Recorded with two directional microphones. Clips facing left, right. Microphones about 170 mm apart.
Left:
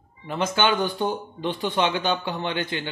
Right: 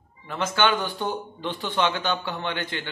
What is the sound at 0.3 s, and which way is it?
A man's voice, 15° left (ahead or behind).